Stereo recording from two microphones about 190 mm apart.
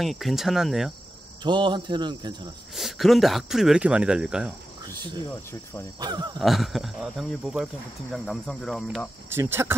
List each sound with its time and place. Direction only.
0.0 s speech: centre (ahead or behind)
1.4 s speech: 25° right (ahead or behind)
2.7 s speech: centre (ahead or behind)
5.9 s speech: 20° right (ahead or behind)
6.4 s speech: centre (ahead or behind)
9.3 s speech: 10° right (ahead or behind)